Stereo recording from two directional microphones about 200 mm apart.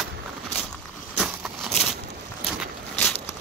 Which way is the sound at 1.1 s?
Centre (ahead or behind).